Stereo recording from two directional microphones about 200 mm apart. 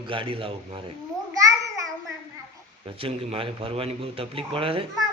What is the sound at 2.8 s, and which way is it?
A man's voice, 25° right (ahead or behind).